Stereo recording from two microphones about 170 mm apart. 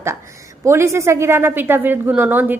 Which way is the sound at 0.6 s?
15° right (ahead or behind).